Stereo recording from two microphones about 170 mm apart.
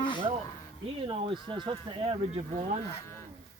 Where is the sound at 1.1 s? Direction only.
30° right (ahead or behind).